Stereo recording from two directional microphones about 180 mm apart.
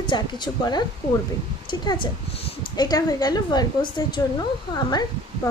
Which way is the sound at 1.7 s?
25° left (ahead or behind).